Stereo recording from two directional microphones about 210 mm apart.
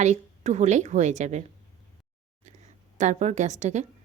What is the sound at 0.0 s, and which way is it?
Speech, 35° right (ahead or behind).